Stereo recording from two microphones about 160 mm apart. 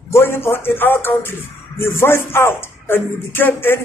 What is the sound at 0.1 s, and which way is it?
Speech, 15° left (ahead or behind).